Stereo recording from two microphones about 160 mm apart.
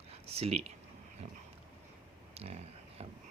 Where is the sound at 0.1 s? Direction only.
40° right (ahead or behind).